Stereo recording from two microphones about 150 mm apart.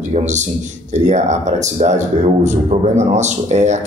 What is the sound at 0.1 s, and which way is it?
A man's voice, 50° right (ahead or behind).